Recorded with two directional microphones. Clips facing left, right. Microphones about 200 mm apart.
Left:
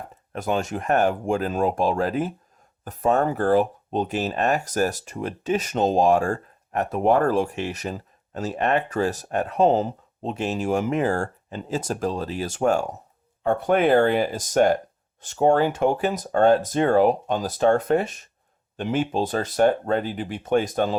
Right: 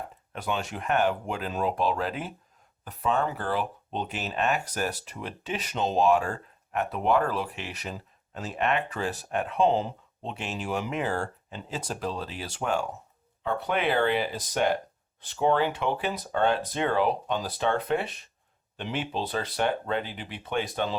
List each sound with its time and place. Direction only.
0.3 s speech: 45° left (ahead or behind)